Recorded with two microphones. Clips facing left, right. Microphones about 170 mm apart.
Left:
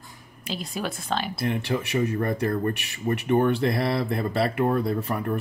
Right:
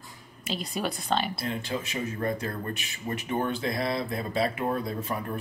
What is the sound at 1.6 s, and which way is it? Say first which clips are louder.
Speech: left 7 dB; 70° left (ahead or behind).